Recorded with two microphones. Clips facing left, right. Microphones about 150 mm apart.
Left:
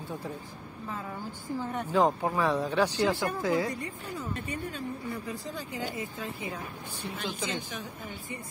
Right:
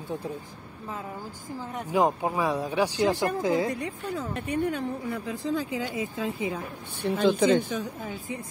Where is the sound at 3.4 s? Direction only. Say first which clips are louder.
Right 2 dB; 20° right (ahead or behind).